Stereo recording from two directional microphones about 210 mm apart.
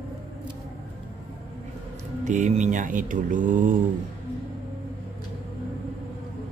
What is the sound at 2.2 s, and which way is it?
Speech, 35° right (ahead or behind).